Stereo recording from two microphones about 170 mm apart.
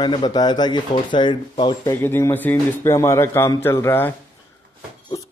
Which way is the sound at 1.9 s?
15° left (ahead or behind).